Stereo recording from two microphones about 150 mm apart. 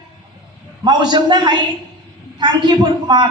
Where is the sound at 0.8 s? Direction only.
30° right (ahead or behind).